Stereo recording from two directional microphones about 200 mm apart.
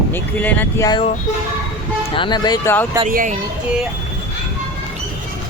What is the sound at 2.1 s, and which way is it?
Speech, 25° left (ahead or behind).